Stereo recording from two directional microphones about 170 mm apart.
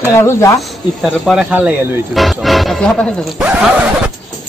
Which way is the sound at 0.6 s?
Centre (ahead or behind).